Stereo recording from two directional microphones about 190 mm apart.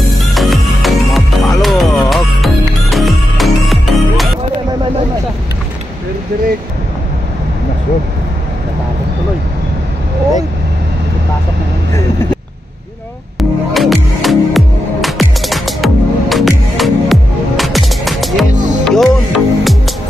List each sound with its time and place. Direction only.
0.1 s music: centre (ahead or behind)
13.4 s music: centre (ahead or behind)
18.5 s music: 40° right (ahead or behind)
18.9 s music: centre (ahead or behind)